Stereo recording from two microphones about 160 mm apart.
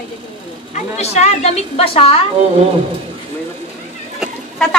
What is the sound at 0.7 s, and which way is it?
A woman's voice, 45° left (ahead or behind).